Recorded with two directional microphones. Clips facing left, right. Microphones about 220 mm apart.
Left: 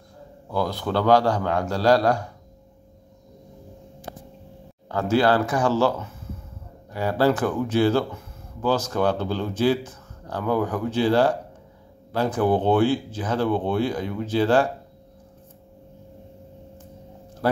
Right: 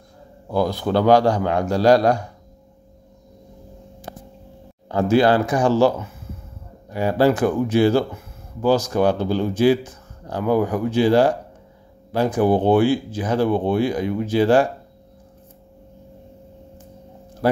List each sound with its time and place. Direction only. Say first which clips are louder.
0.5 s speech: right 5 dB; 15° right (ahead or behind)
4.8 s speech: right 4 dB; 15° right (ahead or behind)